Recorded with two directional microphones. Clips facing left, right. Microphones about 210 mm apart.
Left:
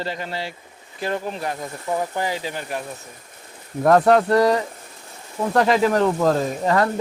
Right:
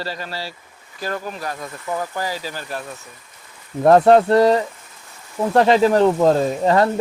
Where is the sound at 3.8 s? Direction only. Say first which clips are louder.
Right 3 dB; 25° right (ahead or behind).